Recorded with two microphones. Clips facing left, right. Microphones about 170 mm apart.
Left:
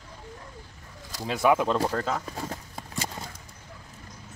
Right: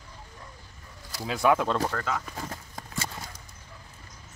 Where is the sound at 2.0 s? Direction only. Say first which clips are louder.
Left 2 dB; 35° left (ahead or behind).